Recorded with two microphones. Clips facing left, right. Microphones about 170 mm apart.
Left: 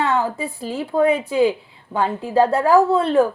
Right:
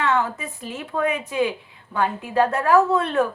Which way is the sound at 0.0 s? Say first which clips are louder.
Left 2 dB; 30° left (ahead or behind).